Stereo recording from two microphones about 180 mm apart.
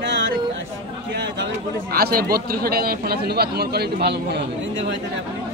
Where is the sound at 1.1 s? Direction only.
65° right (ahead or behind).